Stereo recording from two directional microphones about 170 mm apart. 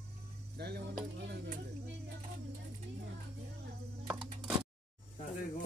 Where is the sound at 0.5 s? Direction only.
75° right (ahead or behind).